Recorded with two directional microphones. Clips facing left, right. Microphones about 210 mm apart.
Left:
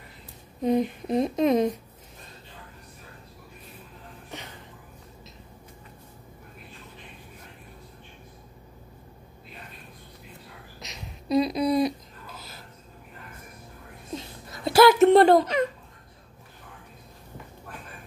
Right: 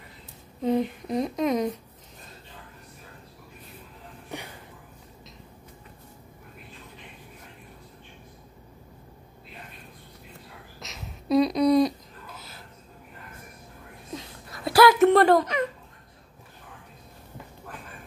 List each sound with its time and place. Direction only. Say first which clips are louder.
0.6 s speech: left 1 dB; 15° left (ahead or behind)
10.8 s a sound: right 1 dB; centre (ahead or behind)
14.1 s laughter: left 2 dB; 25° left (ahead or behind)